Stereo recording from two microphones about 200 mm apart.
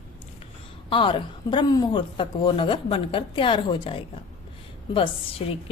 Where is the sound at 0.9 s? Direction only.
25° left (ahead or behind).